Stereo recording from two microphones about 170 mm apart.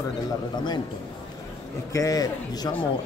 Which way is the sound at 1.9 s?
20° left (ahead or behind).